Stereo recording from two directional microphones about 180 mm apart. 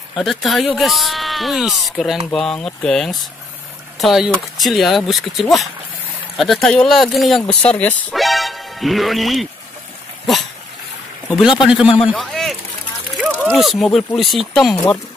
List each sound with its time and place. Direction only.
0.1 s speech: centre (ahead or behind)
8.2 s music: centre (ahead or behind)
11.2 s a man's voice: 5° right (ahead or behind)
13.2 s a sound: 10° right (ahead or behind)
13.5 s speech: centre (ahead or behind)